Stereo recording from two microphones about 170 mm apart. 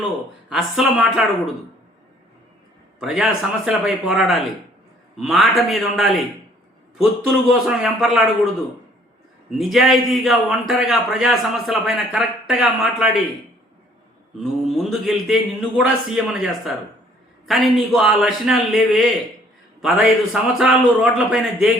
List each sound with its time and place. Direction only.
0.5 s a man's voice: centre (ahead or behind)
3.0 s a man's voice: 5° right (ahead or behind)
9.5 s a man's voice: centre (ahead or behind)
14.3 s a man's voice: centre (ahead or behind)